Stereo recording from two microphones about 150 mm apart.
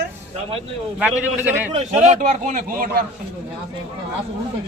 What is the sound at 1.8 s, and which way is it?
A man's voice, 50° right (ahead or behind).